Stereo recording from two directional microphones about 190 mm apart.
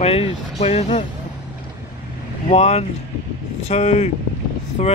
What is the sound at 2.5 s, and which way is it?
Speech, 35° left (ahead or behind).